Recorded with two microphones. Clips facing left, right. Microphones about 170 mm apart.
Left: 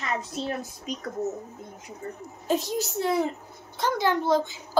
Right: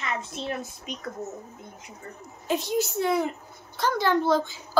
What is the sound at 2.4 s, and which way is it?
Speech, 40° left (ahead or behind).